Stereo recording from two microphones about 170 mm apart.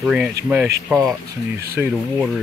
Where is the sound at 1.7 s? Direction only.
10° right (ahead or behind).